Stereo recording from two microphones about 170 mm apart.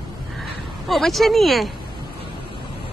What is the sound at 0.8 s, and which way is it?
Speech, centre (ahead or behind).